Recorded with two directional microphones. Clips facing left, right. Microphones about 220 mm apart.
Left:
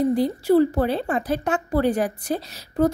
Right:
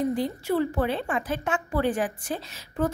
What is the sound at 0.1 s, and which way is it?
A woman's voice, 35° left (ahead or behind).